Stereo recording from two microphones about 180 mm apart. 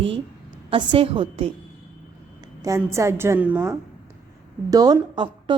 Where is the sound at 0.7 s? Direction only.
25° right (ahead or behind).